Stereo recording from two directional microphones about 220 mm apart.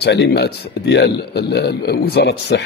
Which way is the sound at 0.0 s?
50° left (ahead or behind).